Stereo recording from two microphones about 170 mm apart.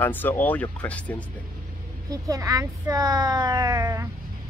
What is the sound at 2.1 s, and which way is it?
Speech, 20° right (ahead or behind).